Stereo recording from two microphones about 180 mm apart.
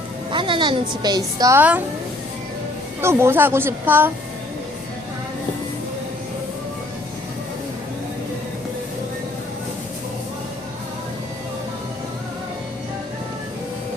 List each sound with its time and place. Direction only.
0.3 s a woman's voice: 25° right (ahead or behind); by 1.8 s 10° right (ahead or behind)
3.0 s speech: 15° right (ahead or behind)